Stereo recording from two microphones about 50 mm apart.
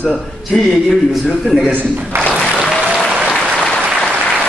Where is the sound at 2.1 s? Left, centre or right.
Right.